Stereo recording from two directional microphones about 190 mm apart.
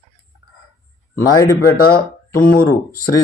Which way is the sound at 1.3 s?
15° left (ahead or behind).